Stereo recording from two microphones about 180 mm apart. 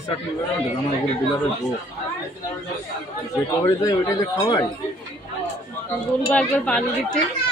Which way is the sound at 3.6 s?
15° left (ahead or behind).